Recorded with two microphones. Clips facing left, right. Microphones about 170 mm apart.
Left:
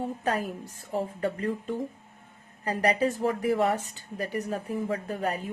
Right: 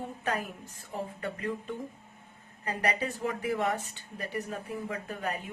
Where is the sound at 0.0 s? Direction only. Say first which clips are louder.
Left 5 dB; 35° left (ahead or behind).